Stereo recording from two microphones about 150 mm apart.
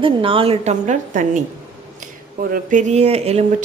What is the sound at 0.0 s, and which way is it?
A woman's voice, 35° right (ahead or behind).